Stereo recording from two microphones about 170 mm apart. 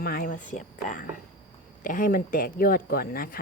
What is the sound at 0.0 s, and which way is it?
Speech, 55° left (ahead or behind).